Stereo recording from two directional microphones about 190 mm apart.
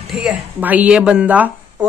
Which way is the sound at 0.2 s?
10° right (ahead or behind).